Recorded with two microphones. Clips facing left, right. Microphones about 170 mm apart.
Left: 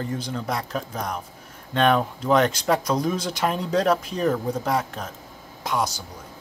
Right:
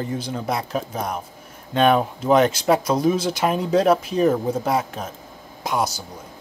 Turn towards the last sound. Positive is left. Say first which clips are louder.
# right 2 dB
turn(degrees=-10)  # may be behind; listen again after turning